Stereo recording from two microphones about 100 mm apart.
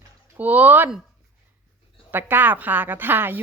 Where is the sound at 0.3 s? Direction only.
15° right (ahead or behind).